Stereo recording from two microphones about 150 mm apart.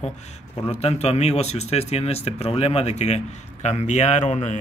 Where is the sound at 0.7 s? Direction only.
45° left (ahead or behind).